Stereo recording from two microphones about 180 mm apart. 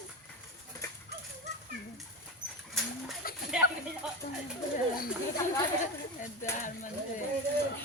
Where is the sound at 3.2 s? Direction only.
55° left (ahead or behind).